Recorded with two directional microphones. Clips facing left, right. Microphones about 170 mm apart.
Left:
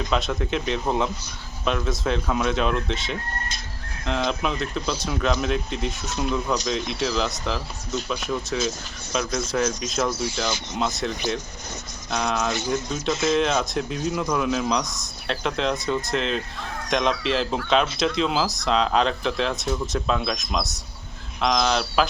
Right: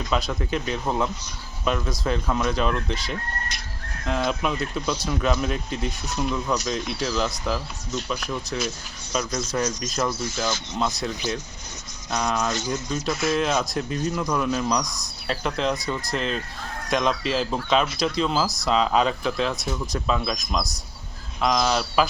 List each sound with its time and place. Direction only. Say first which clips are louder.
0.1 s speech: right 1 dB; centre (ahead or behind)
12.1 s speech: even; centre (ahead or behind)
13.1 s speech: left 2 dB; 20° left (ahead or behind)
13.3 s speech: left 1 dB; 5° right (ahead or behind)